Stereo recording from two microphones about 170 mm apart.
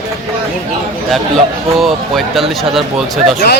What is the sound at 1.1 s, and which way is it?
A man's voice, centre (ahead or behind).